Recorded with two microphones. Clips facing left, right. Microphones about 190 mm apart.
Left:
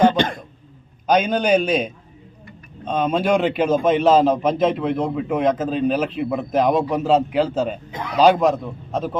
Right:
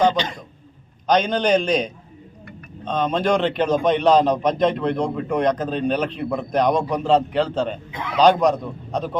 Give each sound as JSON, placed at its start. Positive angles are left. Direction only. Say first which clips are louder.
{"t": 0.0, "sound": "throat clearing", "louder": "left 3 dB", "side_deg": 55}
{"t": 1.0, "sound": "a man's voice", "louder": "left 1 dB", "side_deg": 10}